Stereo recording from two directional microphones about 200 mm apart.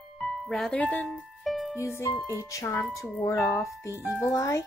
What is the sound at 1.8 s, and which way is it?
Speech, 15° left (ahead or behind).